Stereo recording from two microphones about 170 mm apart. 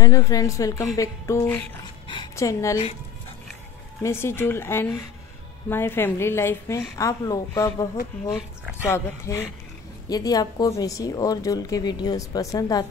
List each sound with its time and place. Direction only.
0.0 s a woman's voice: 20° left (ahead or behind)
4.0 s a woman's voice: 15° left (ahead or behind)
8.4 s speech: 5° right (ahead or behind)
8.8 s a woman's voice: 15° left (ahead or behind)